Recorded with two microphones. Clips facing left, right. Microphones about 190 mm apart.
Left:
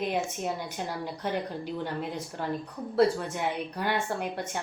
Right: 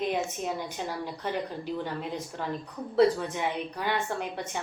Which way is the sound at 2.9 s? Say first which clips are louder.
Right 1 dB; 5° left (ahead or behind).